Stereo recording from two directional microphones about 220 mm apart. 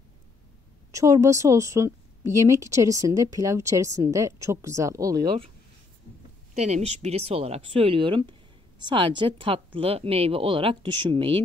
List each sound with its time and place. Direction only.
0.9 s speech: 15° right (ahead or behind)
6.6 s speech: 30° right (ahead or behind)